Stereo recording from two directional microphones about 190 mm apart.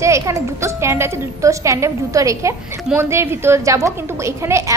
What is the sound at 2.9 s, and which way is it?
Speech, 15° right (ahead or behind).